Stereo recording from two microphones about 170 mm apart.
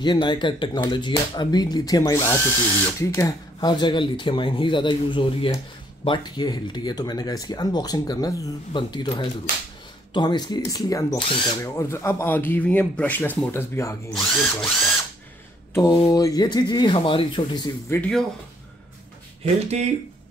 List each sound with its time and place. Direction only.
0.0 s speech: 25° left (ahead or behind)
14.1 s speech: centre (ahead or behind)
15.7 s speech: 20° left (ahead or behind)
17.8 s speech: 15° left (ahead or behind)
19.4 s speech: 40° right (ahead or behind)